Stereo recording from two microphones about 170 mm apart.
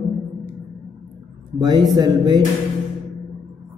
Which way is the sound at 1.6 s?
25° right (ahead or behind).